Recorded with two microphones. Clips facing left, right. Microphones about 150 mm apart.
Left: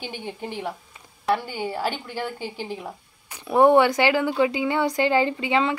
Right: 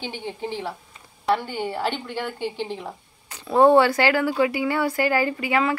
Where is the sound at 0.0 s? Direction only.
15° left (ahead or behind).